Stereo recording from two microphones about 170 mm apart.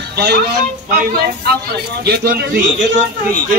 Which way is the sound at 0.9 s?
60° right (ahead or behind).